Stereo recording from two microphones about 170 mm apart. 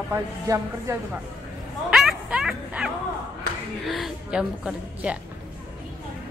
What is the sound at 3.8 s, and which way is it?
A woman's voice, centre (ahead or behind).